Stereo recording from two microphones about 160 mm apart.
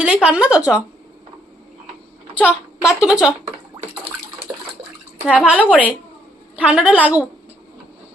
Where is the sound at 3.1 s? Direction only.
5° right (ahead or behind).